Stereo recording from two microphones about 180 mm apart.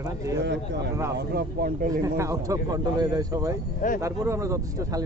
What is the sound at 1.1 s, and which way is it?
Speech, 60° right (ahead or behind).